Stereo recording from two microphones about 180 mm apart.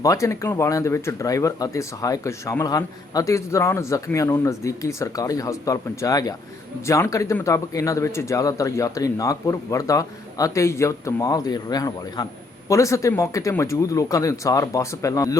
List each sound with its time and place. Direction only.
0.0 s speech: 15° left (ahead or behind)